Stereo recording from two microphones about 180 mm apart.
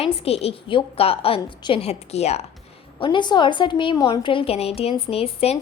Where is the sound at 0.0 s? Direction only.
35° left (ahead or behind).